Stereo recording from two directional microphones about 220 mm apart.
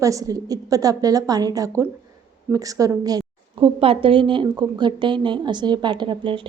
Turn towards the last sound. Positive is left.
turn(degrees=-20)  # may be behind; listen again after turning